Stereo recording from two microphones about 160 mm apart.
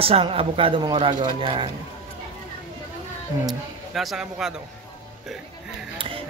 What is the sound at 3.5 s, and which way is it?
A man's voice, centre (ahead or behind).